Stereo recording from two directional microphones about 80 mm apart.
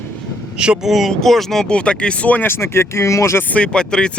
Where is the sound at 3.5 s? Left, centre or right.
Centre.